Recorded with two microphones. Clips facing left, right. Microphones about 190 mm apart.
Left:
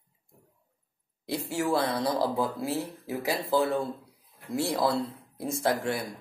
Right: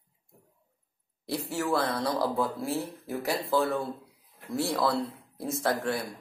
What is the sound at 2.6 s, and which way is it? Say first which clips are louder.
Speech: left 1 dB; 5° left (ahead or behind).